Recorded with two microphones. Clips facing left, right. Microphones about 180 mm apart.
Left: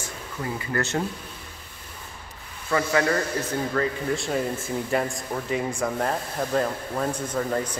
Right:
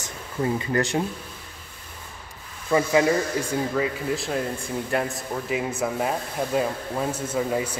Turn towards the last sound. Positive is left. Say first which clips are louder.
# right 1 dB
turn(degrees=-10)  # may be behind; listen again after turning